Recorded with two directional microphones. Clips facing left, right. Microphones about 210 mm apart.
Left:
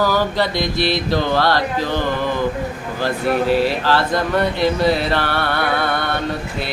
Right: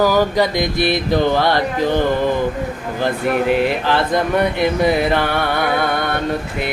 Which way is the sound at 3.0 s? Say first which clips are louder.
Right 1 dB; 15° right (ahead or behind).